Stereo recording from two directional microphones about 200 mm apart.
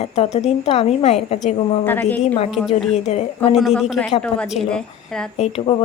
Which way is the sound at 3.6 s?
Centre (ahead or behind).